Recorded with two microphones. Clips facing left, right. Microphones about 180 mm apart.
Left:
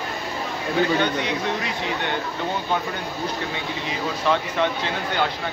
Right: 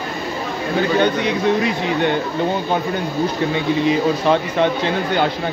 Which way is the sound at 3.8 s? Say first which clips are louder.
Right 8 dB; 20° right (ahead or behind).